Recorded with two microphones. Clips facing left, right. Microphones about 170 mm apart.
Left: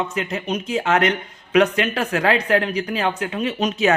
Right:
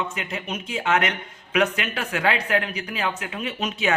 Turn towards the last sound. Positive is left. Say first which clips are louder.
# left 6 dB
turn(degrees=40)  # may be behind; listen again after turning